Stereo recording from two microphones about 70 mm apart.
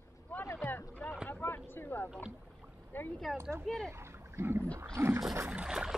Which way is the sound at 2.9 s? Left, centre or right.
Left.